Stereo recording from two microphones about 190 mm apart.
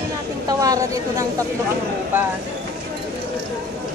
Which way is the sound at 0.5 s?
20° right (ahead or behind).